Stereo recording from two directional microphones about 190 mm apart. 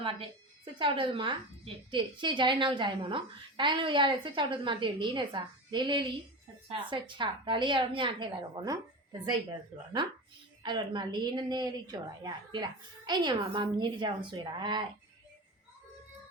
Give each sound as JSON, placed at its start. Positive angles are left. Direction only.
{"t": 0.0, "sound": "a woman's voice", "side_deg": -25}
{"t": 10.6, "sound": "a woman's voice", "side_deg": -25}